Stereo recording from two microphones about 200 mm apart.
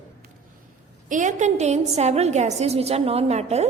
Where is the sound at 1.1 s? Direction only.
40° right (ahead or behind).